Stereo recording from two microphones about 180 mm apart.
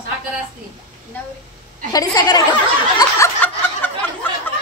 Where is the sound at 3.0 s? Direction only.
15° left (ahead or behind).